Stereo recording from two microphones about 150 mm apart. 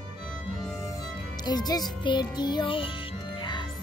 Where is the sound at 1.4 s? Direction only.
25° left (ahead or behind).